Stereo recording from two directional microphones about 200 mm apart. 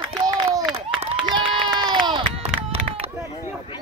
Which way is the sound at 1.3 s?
20° right (ahead or behind).